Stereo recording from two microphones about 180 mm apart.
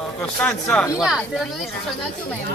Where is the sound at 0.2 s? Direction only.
5° left (ahead or behind).